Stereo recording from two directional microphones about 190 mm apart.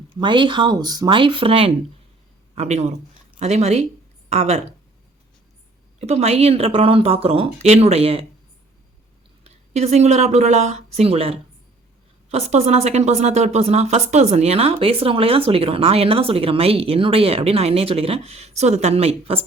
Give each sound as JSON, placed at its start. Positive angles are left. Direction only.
{"t": 0.2, "sound": "speech", "side_deg": -25}
{"t": 6.0, "sound": "speech", "side_deg": -35}
{"t": 9.4, "sound": "speech", "side_deg": -35}